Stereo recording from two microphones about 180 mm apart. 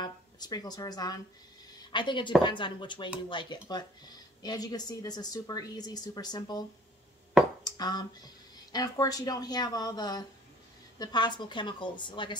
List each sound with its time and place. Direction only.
0.0 s a woman's voice: 20° left (ahead or behind)
7.6 s a woman's voice: 20° left (ahead or behind)